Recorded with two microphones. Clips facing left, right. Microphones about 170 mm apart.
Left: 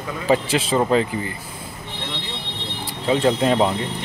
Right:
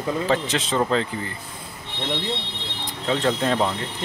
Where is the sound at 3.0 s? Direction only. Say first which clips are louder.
Left 4 dB; 10° left (ahead or behind).